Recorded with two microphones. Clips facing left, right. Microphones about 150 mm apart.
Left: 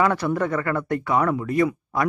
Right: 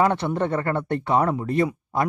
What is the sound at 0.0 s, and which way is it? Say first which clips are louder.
Speech: even; 25° right (ahead or behind).